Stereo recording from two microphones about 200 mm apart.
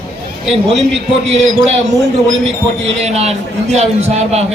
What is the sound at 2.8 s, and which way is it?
A man's voice, 30° right (ahead or behind).